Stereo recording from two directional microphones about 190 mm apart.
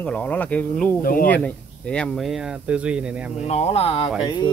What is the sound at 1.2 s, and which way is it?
Speech, 10° left (ahead or behind).